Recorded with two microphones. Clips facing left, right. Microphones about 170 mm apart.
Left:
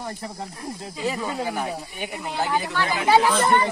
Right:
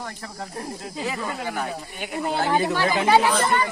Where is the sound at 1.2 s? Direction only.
15° left (ahead or behind).